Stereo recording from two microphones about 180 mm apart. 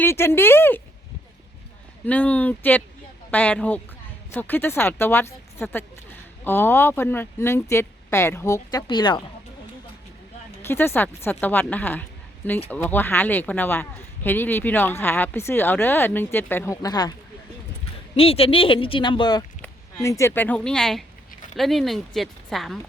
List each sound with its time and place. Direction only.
0.0 s speech: 15° left (ahead or behind)
2.0 s speech: 10° left (ahead or behind); by 9.2 s 25° left (ahead or behind)
10.7 s speech: 10° left (ahead or behind)
18.2 s speech: 30° left (ahead or behind); by 22.8 s centre (ahead or behind)